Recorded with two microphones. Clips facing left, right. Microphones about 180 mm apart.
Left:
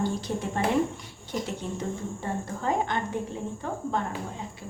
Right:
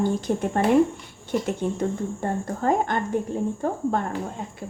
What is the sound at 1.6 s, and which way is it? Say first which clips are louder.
Speech: right 7 dB; 55° right (ahead or behind).